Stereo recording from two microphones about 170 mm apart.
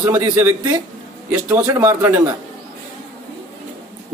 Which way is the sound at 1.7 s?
20° right (ahead or behind).